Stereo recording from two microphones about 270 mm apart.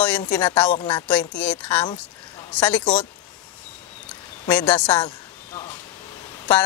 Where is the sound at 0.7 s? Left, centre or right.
Centre.